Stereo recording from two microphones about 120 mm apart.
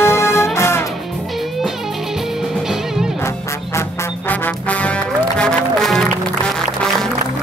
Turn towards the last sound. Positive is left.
turn(degrees=5)  # may be behind; listen again after turning